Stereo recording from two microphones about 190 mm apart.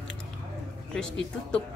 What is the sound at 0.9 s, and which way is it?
Speech, 5° left (ahead or behind).